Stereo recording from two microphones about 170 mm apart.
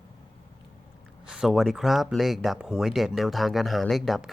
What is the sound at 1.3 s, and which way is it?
Speech, 5° right (ahead or behind).